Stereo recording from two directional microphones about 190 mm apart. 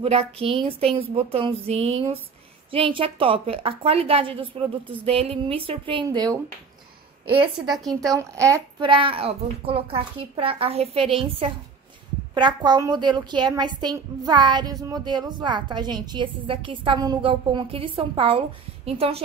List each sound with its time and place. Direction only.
0.0 s a woman's voice: 30° right (ahead or behind)
7.6 s speech: centre (ahead or behind)
8.1 s a woman's voice: 15° right (ahead or behind); by 19.2 s 30° right (ahead or behind)